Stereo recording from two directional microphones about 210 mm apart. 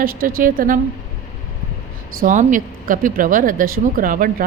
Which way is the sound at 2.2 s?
40° right (ahead or behind).